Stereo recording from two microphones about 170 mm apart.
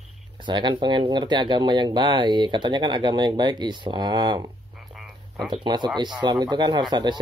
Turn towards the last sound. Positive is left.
turn(degrees=-25)  # may be behind; listen again after turning